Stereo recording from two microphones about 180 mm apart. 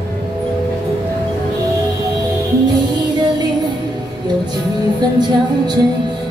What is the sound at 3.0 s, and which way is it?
Music, 25° right (ahead or behind).